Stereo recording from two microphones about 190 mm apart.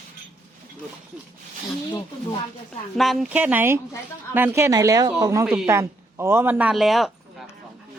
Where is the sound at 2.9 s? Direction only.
Centre (ahead or behind).